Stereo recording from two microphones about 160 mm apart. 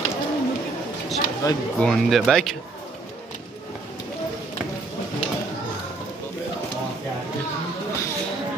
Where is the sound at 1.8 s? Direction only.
Centre (ahead or behind).